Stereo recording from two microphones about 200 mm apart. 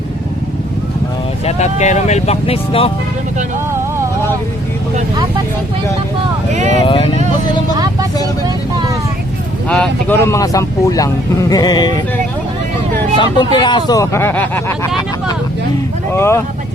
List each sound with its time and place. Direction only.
1.5 s speech: 35° left (ahead or behind)
6.7 s speech: 25° left (ahead or behind)
9.6 s speech: 5° left (ahead or behind)
13.1 s speech: 25° left (ahead or behind)
16.1 s speech: 10° left (ahead or behind)